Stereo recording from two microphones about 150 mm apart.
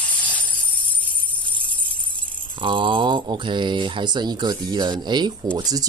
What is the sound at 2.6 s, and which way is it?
Speech, 35° right (ahead or behind).